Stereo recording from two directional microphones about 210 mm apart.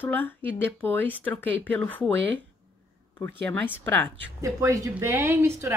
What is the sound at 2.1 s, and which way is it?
Speech, 60° right (ahead or behind).